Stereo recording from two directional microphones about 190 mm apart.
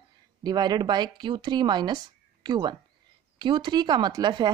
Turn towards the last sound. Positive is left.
turn(degrees=-25)  # may be behind; listen again after turning